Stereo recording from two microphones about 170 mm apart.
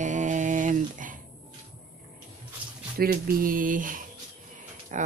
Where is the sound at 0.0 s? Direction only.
45° right (ahead or behind).